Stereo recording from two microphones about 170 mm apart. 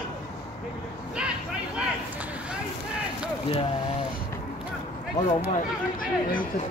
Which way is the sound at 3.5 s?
35° left (ahead or behind).